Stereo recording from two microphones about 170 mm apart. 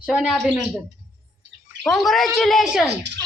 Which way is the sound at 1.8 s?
Centre (ahead or behind).